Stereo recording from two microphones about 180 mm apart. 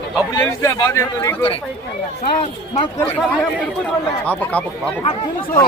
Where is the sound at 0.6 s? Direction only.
15° left (ahead or behind).